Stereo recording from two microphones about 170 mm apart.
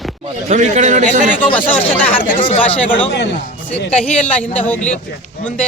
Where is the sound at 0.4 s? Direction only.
45° right (ahead or behind).